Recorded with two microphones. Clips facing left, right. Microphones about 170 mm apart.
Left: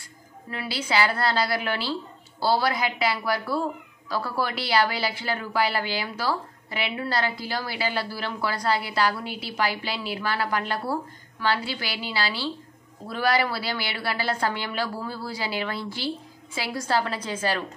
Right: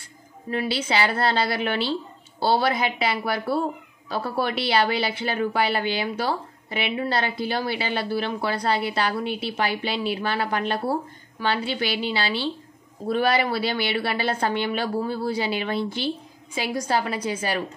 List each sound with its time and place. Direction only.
0.5 s a woman's voice: 25° right (ahead or behind)